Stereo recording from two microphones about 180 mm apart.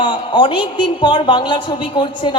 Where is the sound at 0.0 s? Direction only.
25° left (ahead or behind).